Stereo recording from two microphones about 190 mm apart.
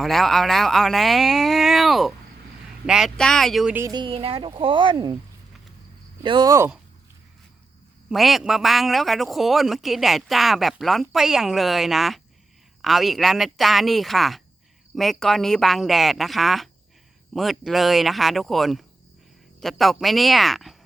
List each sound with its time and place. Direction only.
0.0 s speech: centre (ahead or behind)
3.9 s speech: 25° right (ahead or behind)
6.2 s speech: 25° right (ahead or behind)
8.1 s speech: centre (ahead or behind)